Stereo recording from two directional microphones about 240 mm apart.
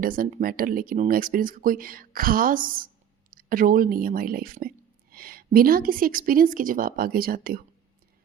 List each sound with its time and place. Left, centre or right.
0.0 s speech: right